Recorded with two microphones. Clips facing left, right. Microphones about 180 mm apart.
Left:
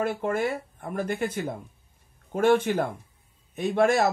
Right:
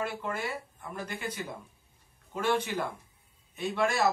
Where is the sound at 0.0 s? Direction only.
50° left (ahead or behind).